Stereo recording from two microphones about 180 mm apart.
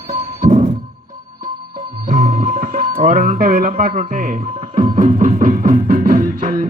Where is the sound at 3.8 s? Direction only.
50° right (ahead or behind).